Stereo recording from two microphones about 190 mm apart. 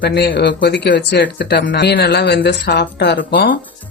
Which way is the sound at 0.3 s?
60° left (ahead or behind).